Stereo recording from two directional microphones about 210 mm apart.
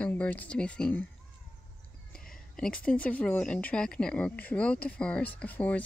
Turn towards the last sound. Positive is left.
turn(degrees=5)  # may be behind; listen again after turning